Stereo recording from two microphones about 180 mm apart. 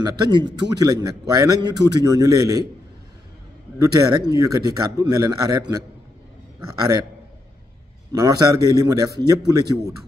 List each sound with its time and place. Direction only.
0.0 s a man's voice: 20° right (ahead or behind)
4.0 s a man's voice: 20° right (ahead or behind)
8.1 s a man's voice: 20° right (ahead or behind)